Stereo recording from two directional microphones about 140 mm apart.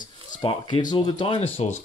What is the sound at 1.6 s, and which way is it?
Speech, 50° left (ahead or behind).